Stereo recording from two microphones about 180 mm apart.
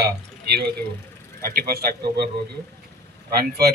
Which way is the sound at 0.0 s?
60° right (ahead or behind).